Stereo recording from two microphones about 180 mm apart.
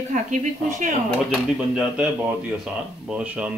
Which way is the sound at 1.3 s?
5° right (ahead or behind).